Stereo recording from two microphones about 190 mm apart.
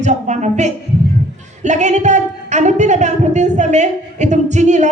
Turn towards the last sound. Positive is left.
turn(degrees=-40)  # may be behind; listen again after turning